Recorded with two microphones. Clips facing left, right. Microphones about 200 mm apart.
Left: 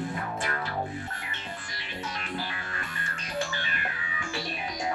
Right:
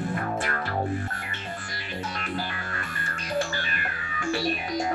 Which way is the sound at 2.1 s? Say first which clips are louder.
Right 3 dB; 55° right (ahead or behind).